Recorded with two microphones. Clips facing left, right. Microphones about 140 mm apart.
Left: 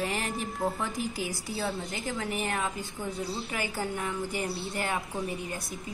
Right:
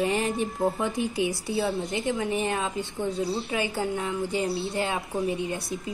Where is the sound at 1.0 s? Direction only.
70° right (ahead or behind).